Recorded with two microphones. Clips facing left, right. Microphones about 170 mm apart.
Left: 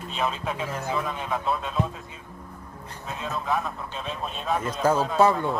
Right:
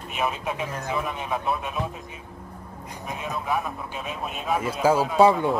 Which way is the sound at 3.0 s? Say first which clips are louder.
Even; 15° right (ahead or behind).